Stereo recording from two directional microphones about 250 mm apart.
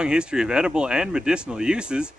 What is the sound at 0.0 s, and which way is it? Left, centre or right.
Speech, centre.